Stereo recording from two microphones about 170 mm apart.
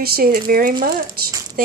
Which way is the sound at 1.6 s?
60° right (ahead or behind).